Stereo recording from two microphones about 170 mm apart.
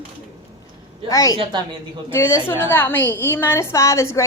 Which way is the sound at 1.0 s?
20° left (ahead or behind).